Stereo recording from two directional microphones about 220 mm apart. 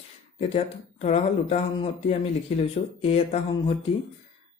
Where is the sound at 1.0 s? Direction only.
30° left (ahead or behind).